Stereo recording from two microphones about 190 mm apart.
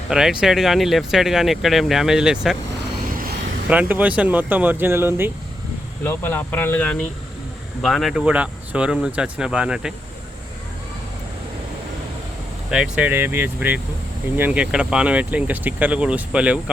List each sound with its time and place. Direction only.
0.1 s speech: 5° right (ahead or behind)
3.1 s vehicle: 50° right (ahead or behind)
3.7 s speech: 10° right (ahead or behind)
6.1 s speech: 10° left (ahead or behind); by 9.9 s 5° right (ahead or behind)
12.7 s speech: 5° right (ahead or behind)